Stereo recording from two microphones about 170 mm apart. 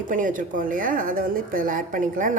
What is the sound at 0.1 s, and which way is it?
A woman's voice, 50° right (ahead or behind).